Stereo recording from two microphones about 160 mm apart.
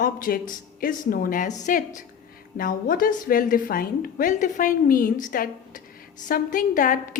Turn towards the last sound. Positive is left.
turn(degrees=55)  # may be behind; listen again after turning